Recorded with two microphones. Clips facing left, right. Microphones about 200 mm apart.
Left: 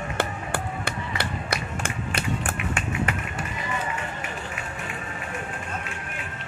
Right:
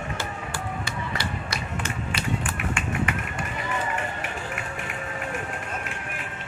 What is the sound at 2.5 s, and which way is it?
Run, 40° left (ahead or behind).